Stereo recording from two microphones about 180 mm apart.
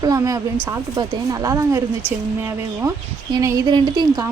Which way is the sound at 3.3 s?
20° right (ahead or behind).